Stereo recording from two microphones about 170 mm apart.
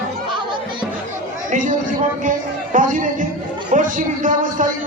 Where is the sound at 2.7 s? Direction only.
50° right (ahead or behind).